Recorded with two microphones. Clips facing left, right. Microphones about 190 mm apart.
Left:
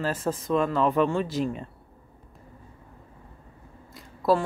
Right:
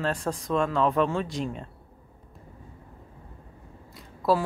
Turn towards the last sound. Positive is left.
turn(degrees=0)  # may be behind; listen again after turning